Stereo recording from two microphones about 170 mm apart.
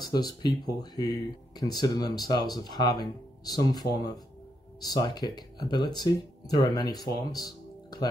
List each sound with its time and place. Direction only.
0.0 s speech: 25° left (ahead or behind)
4.8 s speech: 20° left (ahead or behind)